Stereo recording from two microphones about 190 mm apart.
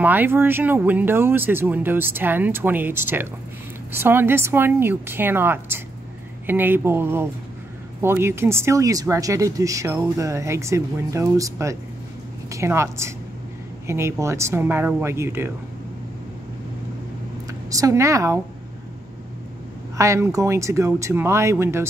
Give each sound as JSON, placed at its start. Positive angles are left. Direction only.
{"t": 0.0, "sound": "speech", "side_deg": -10}
{"t": 17.5, "sound": "a woman's voice", "side_deg": -20}
{"t": 20.0, "sound": "speech", "side_deg": -15}